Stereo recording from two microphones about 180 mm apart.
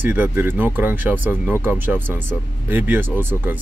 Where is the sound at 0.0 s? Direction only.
10° right (ahead or behind).